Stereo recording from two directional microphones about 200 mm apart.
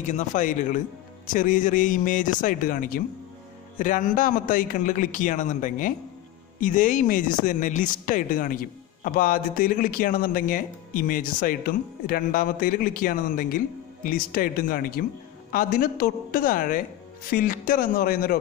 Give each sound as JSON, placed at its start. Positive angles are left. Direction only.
{"t": 0.0, "sound": "a man's voice", "side_deg": 40}